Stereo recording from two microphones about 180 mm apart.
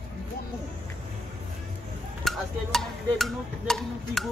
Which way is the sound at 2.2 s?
Centre (ahead or behind).